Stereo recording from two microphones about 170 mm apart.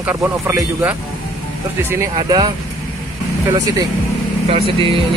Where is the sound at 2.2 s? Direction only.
25° right (ahead or behind).